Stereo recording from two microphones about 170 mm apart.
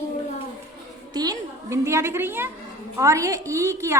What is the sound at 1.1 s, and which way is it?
A woman's voice, 25° right (ahead or behind).